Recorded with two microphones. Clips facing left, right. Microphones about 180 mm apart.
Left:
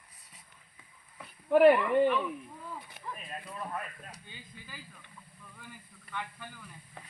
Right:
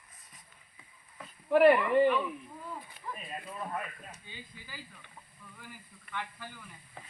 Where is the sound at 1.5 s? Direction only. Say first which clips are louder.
Left 1 dB; centre (ahead or behind).